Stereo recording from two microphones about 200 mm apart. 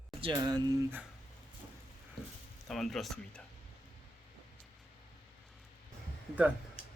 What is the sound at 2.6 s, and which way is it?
Speech, centre (ahead or behind).